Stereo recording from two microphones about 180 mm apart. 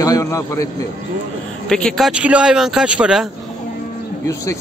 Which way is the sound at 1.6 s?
5° left (ahead or behind).